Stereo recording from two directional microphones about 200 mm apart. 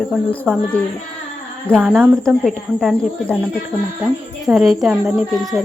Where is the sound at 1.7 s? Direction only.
10° right (ahead or behind).